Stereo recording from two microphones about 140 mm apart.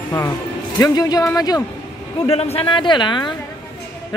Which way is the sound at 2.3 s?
45° left (ahead or behind).